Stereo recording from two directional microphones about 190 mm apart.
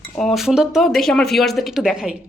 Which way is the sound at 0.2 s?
Centre (ahead or behind).